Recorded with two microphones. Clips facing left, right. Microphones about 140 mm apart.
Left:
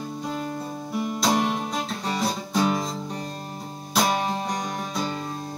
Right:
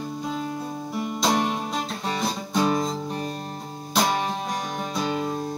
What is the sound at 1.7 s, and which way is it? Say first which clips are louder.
Guitar: even; centre (ahead or behind).